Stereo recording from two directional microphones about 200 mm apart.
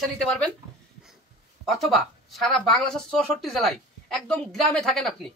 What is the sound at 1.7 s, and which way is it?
Speech, centre (ahead or behind).